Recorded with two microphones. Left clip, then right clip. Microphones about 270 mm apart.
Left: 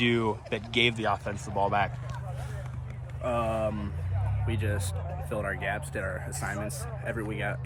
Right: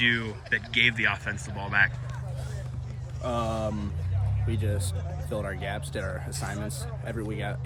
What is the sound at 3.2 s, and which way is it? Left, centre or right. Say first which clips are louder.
Speech: left 1 dB; centre.